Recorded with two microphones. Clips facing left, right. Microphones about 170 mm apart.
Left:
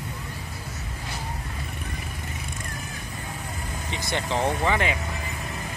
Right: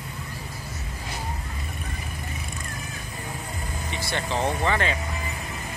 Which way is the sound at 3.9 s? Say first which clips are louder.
Left 1 dB; 20° left (ahead or behind).